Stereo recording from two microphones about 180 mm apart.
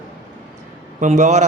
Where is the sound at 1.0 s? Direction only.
40° right (ahead or behind).